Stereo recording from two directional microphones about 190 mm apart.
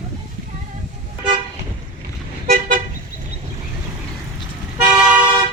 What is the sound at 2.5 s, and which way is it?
Toot, 40° right (ahead or behind).